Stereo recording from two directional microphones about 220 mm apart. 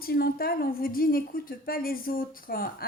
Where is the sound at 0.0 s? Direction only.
45° left (ahead or behind).